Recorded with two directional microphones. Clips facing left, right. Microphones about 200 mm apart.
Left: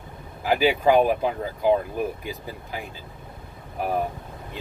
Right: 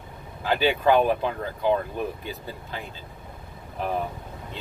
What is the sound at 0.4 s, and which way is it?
Speech, 10° left (ahead or behind).